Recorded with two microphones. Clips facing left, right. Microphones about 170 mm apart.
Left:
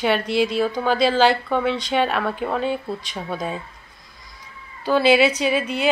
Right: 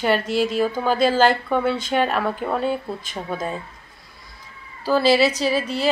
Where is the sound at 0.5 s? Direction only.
5° right (ahead or behind).